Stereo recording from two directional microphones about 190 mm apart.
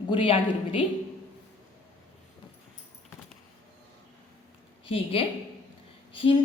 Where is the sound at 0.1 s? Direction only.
30° left (ahead or behind).